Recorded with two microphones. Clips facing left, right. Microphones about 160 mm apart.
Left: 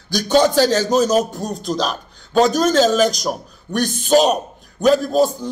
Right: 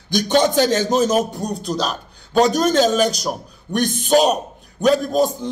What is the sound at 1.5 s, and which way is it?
A man's voice, 10° right (ahead or behind).